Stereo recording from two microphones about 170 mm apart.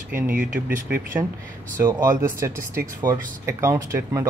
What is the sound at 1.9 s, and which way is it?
Speech, 20° right (ahead or behind).